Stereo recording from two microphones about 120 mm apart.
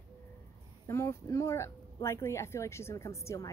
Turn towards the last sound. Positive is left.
turn(degrees=25)  # may be behind; listen again after turning